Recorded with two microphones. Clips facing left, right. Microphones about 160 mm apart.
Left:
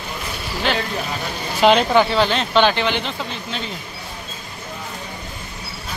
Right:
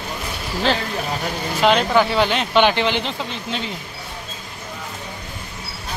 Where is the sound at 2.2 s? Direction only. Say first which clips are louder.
Even; 15° right (ahead or behind).